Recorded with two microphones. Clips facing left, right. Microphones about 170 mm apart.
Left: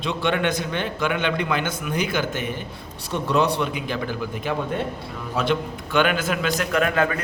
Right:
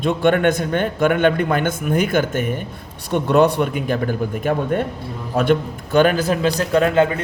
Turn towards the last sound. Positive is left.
turn(degrees=-25)  # may be behind; listen again after turning